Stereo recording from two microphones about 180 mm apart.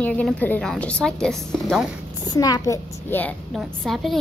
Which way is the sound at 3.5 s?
Centre (ahead or behind).